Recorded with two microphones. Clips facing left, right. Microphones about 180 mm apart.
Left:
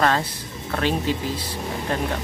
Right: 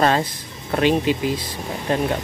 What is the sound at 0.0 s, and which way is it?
Speech, 20° right (ahead or behind).